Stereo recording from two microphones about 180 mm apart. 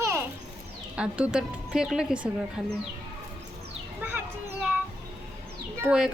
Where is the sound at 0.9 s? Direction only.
5° right (ahead or behind).